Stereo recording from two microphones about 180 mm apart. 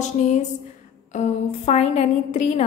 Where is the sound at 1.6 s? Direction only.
40° left (ahead or behind).